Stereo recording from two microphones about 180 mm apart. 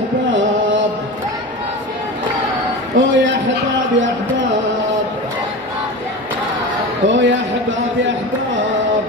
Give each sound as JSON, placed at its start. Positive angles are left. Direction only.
{"t": 0.3, "sound": "a sound", "side_deg": -90}
{"t": 3.0, "sound": "speech", "side_deg": -90}
{"t": 7.1, "sound": "a man's voice", "side_deg": -90}